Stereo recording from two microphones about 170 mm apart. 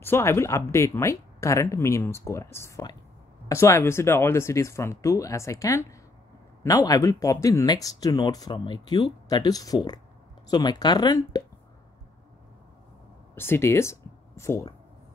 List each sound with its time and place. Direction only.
0.0 s speech: 15° left (ahead or behind)
13.3 s speech: 15° left (ahead or behind)